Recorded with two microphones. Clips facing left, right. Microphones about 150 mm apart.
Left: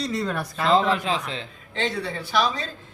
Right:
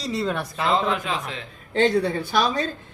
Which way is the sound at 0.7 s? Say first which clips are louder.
Left 3 dB; 30° left (ahead or behind).